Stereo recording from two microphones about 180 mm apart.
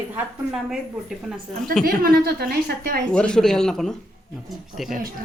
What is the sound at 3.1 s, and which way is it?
Speech, 5° left (ahead or behind).